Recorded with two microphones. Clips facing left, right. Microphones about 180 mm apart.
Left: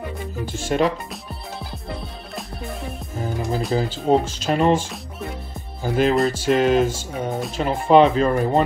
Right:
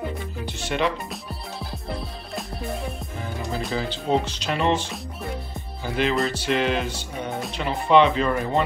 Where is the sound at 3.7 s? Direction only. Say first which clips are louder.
Left 5 dB; 45° left (ahead or behind).